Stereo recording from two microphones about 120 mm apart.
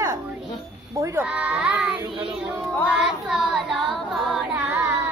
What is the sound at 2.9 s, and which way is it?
Child singing, 5° right (ahead or behind).